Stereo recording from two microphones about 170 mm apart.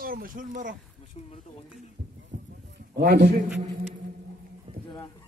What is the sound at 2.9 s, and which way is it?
Speech, 75° right (ahead or behind).